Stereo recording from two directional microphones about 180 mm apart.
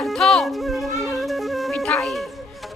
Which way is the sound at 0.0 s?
Centre (ahead or behind).